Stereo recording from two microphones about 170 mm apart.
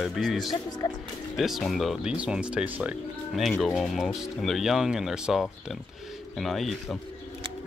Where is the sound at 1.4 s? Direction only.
Centre (ahead or behind).